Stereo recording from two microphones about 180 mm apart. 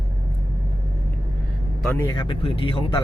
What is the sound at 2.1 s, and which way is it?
Speech, 30° left (ahead or behind).